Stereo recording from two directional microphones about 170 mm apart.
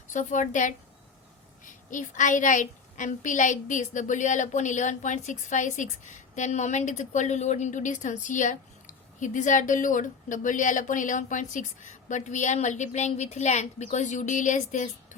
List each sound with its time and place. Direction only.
0.1 s a woman's voice: 45° left (ahead or behind)